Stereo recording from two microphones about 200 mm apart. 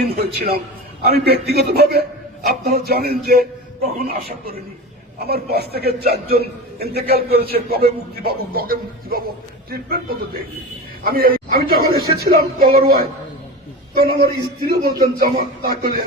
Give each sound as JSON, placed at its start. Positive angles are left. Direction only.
{"t": 0.3, "sound": "a man's voice", "side_deg": -50}